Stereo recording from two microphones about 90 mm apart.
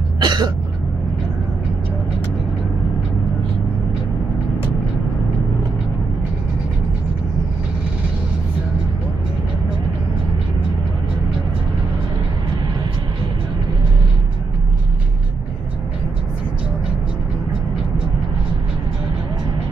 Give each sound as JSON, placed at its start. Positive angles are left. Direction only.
{"t": 0.2, "sound": "cough", "side_deg": -55}